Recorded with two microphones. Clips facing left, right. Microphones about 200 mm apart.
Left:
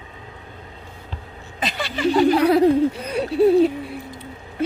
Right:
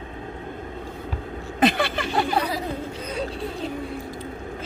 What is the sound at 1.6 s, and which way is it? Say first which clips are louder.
Speech: right 2 dB; 55° right (ahead or behind).